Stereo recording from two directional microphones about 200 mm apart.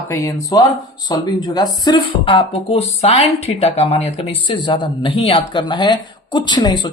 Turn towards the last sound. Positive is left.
turn(degrees=20)  # may be behind; listen again after turning